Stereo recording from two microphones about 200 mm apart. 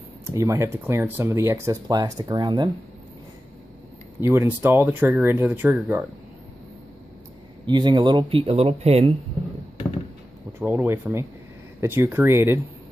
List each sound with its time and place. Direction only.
0.3 s speech: 15° right (ahead or behind)
4.2 s speech: 10° right (ahead or behind)
7.6 s speech: 20° right (ahead or behind)
10.6 s speech: 10° right (ahead or behind)